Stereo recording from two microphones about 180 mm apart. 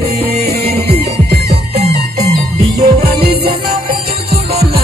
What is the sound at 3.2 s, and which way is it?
Music, 60° right (ahead or behind).